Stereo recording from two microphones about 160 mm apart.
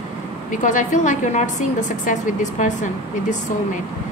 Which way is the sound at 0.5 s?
50° left (ahead or behind).